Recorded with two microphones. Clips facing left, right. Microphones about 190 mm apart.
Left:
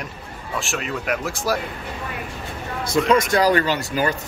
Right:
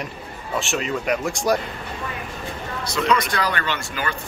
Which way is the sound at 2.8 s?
50° left (ahead or behind).